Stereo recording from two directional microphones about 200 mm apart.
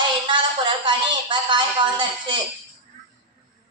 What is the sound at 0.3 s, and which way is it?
A woman's voice, 25° right (ahead or behind).